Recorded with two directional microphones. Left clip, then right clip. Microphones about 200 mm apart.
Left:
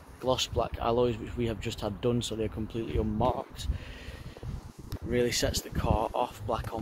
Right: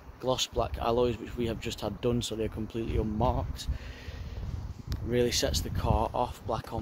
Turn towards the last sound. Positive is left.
turn(degrees=0)  # may be behind; listen again after turning